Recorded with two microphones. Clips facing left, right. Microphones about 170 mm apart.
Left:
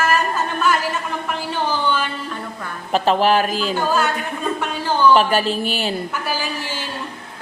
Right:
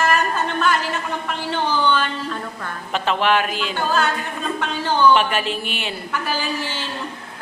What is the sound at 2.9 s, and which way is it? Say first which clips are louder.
Speech: left 4 dB; 35° left (ahead or behind).